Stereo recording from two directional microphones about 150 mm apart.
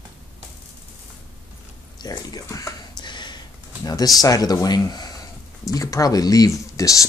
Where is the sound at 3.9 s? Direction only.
25° left (ahead or behind).